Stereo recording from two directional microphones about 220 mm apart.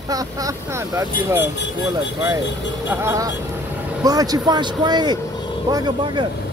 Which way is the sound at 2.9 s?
10° right (ahead or behind).